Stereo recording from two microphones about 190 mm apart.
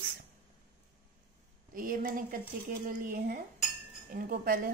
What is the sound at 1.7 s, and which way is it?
Speech, 50° right (ahead or behind).